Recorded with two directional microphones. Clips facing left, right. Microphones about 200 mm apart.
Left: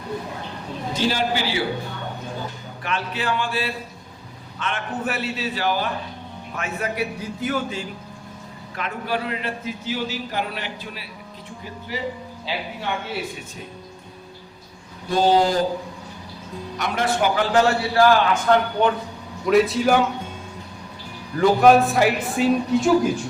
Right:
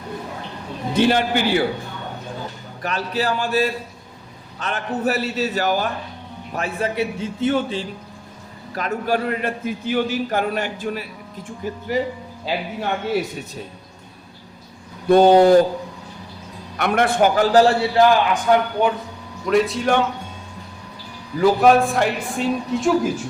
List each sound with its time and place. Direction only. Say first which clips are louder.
0.9 s a man's voice: right 5 dB; 60° right (ahead or behind)
2.8 s a man's voice: right 3 dB; 40° right (ahead or behind)
6.5 s a man's voice: right 4 dB; 35° right (ahead or behind)
8.7 s a man's voice: right 5 dB; 40° right (ahead or behind)
15.1 s a man's voice: right 7 dB; 60° right (ahead or behind)
16.7 s a man's voice: right 5 dB; 60° right (ahead or behind); by 17.7 s 35° right (ahead or behind)
17.9 s a man's voice: right 1 dB; 15° right (ahead or behind)
19.5 s a man's voice: left 1 dB; centre (ahead or behind)
21.3 s a man's voice: even; centre (ahead or behind)